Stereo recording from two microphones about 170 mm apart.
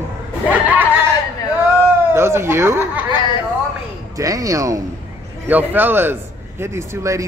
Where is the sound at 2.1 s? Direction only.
15° right (ahead or behind).